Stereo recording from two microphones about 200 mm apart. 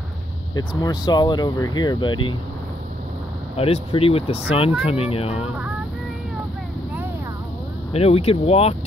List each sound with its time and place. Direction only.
0.6 s speech: 20° left (ahead or behind)
3.5 s speech: 30° left (ahead or behind)
7.9 s speech: 30° left (ahead or behind)